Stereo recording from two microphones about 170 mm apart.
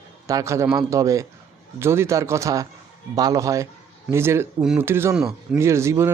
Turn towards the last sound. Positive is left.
turn(degrees=-15)  # may be behind; listen again after turning